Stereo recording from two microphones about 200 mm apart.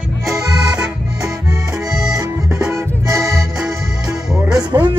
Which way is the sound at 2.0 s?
15° right (ahead or behind).